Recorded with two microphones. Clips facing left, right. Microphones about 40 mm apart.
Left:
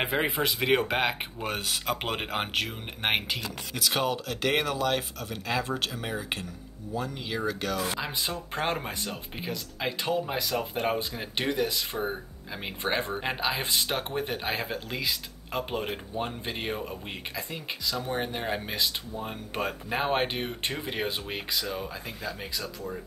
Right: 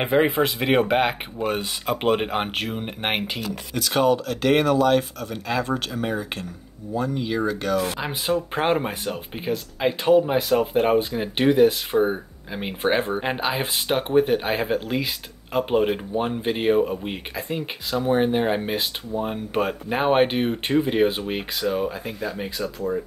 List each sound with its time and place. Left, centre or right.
0.0 s speech: centre
3.7 s speech: centre
8.0 s speech: right
13.5 s speech: right